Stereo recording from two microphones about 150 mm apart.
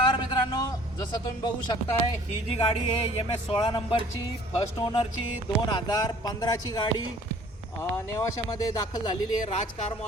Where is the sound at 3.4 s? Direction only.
40° left (ahead or behind).